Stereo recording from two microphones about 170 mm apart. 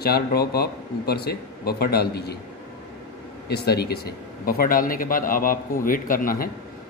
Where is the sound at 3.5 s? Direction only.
70° left (ahead or behind); by 6.4 s 55° left (ahead or behind).